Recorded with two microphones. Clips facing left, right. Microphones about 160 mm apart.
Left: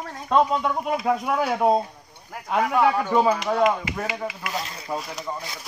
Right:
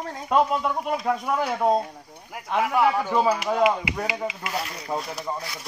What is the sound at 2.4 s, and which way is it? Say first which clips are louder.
Speech: left 1 dB; 5° right (ahead or behind).